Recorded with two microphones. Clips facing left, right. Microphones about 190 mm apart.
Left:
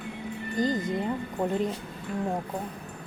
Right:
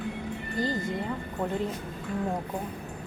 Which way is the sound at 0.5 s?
20° left (ahead or behind).